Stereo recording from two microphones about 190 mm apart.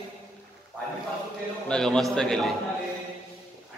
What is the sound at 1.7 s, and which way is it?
Speech, 5° left (ahead or behind).